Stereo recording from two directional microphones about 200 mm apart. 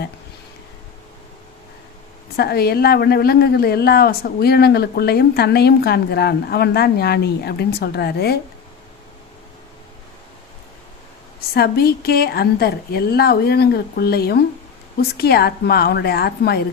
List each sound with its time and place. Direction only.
2.3 s a woman's voice: 50° left (ahead or behind)
11.5 s a woman's voice: 50° left (ahead or behind)